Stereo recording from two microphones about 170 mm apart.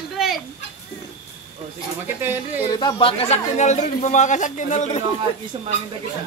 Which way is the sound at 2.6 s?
25° left (ahead or behind).